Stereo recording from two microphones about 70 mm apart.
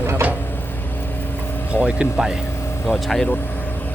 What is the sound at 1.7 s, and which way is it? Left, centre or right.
Speech, centre.